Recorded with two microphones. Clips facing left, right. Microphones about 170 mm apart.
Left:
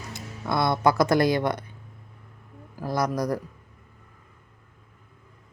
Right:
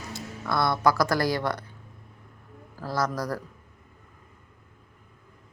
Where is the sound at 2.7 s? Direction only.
15° left (ahead or behind).